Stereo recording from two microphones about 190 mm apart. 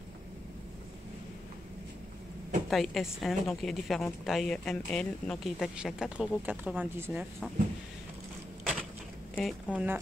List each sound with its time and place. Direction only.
2.7 s a woman's voice: centre (ahead or behind)
9.3 s a woman's voice: centre (ahead or behind)